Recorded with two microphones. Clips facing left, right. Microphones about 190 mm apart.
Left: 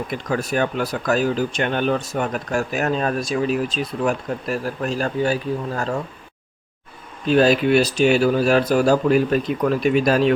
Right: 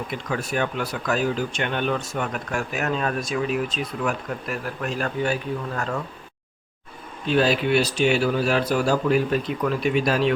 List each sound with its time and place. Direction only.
0.3 s speech: 40° left (ahead or behind)
7.3 s speech: 45° left (ahead or behind)